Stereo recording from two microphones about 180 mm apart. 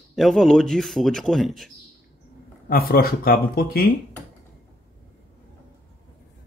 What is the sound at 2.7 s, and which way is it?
Speech, 55° left (ahead or behind).